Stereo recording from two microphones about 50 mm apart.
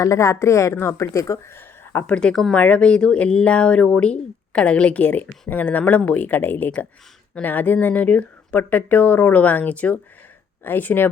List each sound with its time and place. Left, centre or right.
0.0 s a woman's voice: left
0.7 s speech: left
1.1 s speech: left
1.5 s a sound: left
2.0 s a woman's voice: centre
10.6 s speech: left